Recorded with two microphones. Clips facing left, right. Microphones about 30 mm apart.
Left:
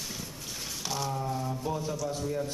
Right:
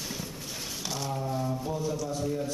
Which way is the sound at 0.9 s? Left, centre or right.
Centre.